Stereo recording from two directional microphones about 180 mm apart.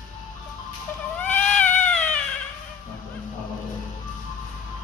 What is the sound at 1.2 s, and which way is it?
Cat, 10° left (ahead or behind).